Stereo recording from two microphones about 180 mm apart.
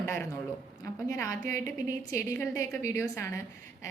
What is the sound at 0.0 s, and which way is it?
A woman's voice, 15° left (ahead or behind).